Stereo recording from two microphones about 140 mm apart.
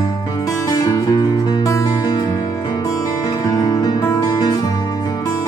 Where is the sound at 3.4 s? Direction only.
25° left (ahead or behind).